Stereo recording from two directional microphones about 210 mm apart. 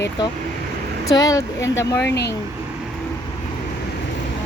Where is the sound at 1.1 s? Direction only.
15° left (ahead or behind).